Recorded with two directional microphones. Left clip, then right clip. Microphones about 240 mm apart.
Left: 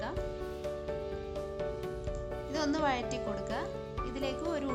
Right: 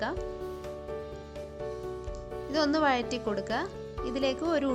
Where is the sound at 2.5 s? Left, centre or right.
Right.